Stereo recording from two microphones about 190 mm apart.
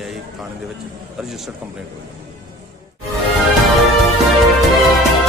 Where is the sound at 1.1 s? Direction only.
Centre (ahead or behind).